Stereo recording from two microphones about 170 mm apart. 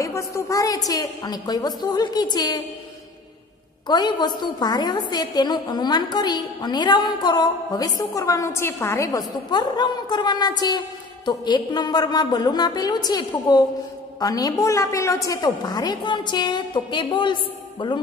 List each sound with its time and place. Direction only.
0.0 s a woman's voice: 20° left (ahead or behind)
3.8 s a woman's voice: 25° left (ahead or behind)